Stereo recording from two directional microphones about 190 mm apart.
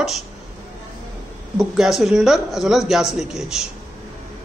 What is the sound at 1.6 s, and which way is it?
Speech, centre (ahead or behind).